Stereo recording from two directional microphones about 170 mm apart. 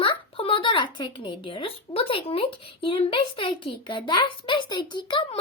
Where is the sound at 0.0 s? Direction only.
30° left (ahead or behind).